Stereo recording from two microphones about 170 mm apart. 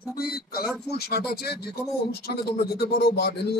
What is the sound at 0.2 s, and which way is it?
A man's voice, 65° left (ahead or behind).